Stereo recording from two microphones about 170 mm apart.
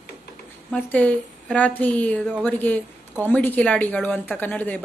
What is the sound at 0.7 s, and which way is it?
A woman's voice, 10° left (ahead or behind).